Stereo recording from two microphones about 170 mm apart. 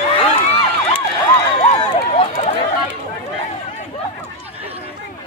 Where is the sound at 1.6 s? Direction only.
35° left (ahead or behind).